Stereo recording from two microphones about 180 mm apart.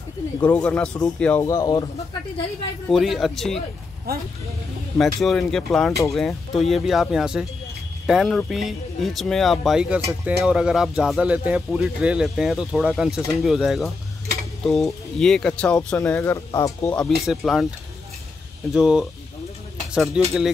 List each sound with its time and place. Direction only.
0.4 s speech: 5° left (ahead or behind)
1.5 s a man's voice: 20° left (ahead or behind)
2.9 s speech: centre (ahead or behind)
4.1 s speech: 60° right (ahead or behind)
4.9 s speech: 5° left (ahead or behind)
17.1 s speech: centre (ahead or behind)
18.7 s speech: 5° right (ahead or behind)
20.2 s speech: 5° right (ahead or behind)